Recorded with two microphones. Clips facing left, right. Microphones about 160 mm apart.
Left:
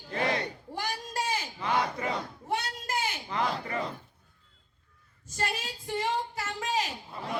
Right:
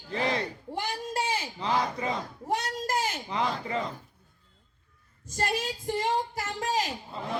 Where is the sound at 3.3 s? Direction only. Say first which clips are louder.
Right 1 dB; 20° right (ahead or behind).